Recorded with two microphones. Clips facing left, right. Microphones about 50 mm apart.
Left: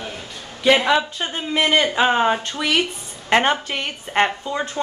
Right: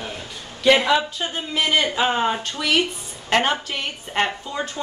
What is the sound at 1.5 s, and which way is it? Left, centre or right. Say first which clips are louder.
A woman's voice: left 3 dB; left.